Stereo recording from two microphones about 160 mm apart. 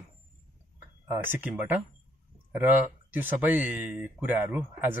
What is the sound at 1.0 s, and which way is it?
Speech, 10° right (ahead or behind).